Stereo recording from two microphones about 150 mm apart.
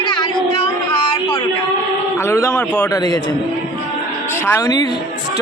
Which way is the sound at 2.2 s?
20° left (ahead or behind).